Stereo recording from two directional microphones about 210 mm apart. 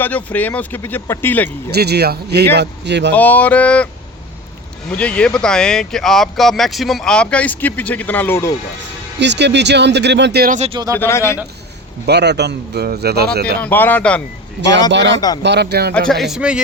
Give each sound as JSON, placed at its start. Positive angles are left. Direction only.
{"t": 0.0, "sound": "speech", "side_deg": 5}
{"t": 1.7, "sound": "a man's voice", "side_deg": -50}
{"t": 3.2, "sound": "speech", "side_deg": 10}
{"t": 4.9, "sound": "speech", "side_deg": 5}
{"t": 9.1, "sound": "speech", "side_deg": -55}
{"t": 10.6, "sound": "speech", "side_deg": -25}
{"t": 10.9, "sound": "speech", "side_deg": 10}
{"t": 12.0, "sound": "a man's voice", "side_deg": -55}
{"t": 13.6, "sound": "speech", "side_deg": 10}
{"t": 14.8, "sound": "a man's voice", "side_deg": -55}
{"t": 16.0, "sound": "speech", "side_deg": 0}